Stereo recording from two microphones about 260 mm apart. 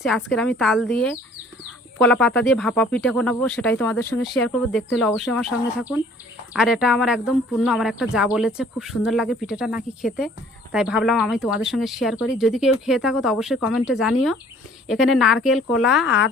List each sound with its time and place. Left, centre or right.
0.0 s speech: centre
2.0 s speech: centre
16.0 s speech: left